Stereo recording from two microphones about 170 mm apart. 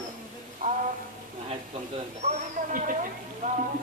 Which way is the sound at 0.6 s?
50° right (ahead or behind).